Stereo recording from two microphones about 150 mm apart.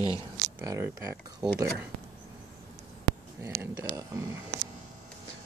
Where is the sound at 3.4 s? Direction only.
20° right (ahead or behind).